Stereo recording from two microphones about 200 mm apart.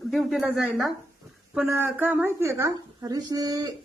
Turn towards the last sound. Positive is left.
turn(degrees=-20)  # may be behind; listen again after turning